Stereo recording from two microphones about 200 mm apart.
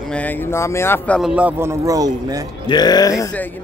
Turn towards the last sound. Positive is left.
turn(degrees=10)  # may be behind; listen again after turning